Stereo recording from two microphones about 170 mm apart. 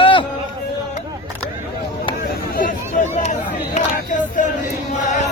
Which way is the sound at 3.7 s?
50° left (ahead or behind).